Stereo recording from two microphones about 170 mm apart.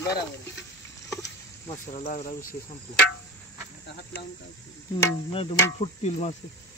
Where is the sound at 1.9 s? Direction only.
40° left (ahead or behind).